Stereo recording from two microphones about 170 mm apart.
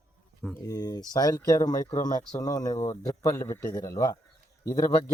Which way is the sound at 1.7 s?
50° left (ahead or behind).